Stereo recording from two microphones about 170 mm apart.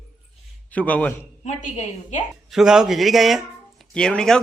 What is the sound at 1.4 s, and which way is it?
Speech, 45° left (ahead or behind).